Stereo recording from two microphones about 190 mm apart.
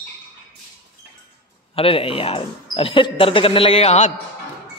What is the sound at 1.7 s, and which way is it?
Speech, 30° left (ahead or behind).